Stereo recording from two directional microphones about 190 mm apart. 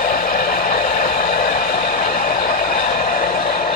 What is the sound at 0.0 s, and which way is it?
Vehicle, 50° left (ahead or behind).